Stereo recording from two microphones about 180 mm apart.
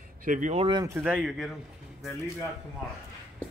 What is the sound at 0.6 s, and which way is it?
Speech, 20° right (ahead or behind).